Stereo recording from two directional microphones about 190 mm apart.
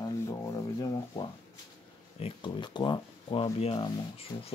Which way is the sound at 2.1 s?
30° left (ahead or behind).